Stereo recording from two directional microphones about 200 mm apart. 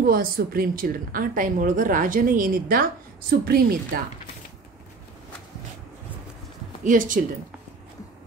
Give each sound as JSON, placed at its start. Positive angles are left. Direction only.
{"t": 0.0, "sound": "a woman's voice", "side_deg": -45}
{"t": 6.8, "sound": "speech", "side_deg": -40}